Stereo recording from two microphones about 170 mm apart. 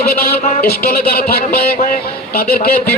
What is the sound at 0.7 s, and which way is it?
Speech, 65° left (ahead or behind).